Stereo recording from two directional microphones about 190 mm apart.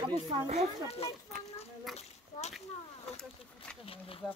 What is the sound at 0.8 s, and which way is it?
Speech, 30° left (ahead or behind).